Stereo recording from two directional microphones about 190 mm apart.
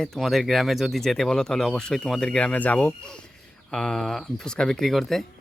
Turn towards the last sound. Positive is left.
turn(degrees=0)  # may be behind; listen again after turning